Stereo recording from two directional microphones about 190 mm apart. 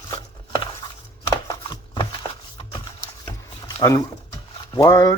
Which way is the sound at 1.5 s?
25° left (ahead or behind).